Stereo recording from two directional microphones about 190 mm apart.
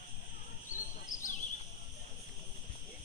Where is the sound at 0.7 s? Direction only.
45° left (ahead or behind).